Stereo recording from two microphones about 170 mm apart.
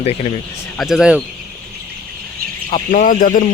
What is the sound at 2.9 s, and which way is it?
Speech, 50° left (ahead or behind).